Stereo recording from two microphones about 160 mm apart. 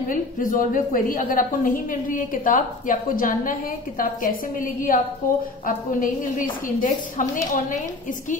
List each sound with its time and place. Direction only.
0.1 s a woman's voice: 60° left (ahead or behind)